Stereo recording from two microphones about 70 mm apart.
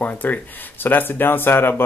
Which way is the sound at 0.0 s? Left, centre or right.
Left.